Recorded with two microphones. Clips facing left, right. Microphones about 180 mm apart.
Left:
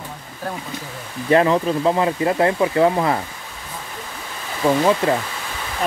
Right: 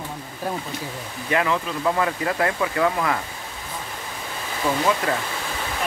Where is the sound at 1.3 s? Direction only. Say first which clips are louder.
Left 7 dB; 35° left (ahead or behind).